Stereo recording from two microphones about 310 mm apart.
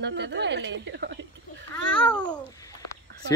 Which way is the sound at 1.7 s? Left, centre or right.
Centre.